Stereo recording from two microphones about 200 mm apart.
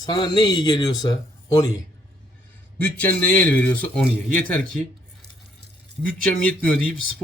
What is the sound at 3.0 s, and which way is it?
Speech, 10° left (ahead or behind).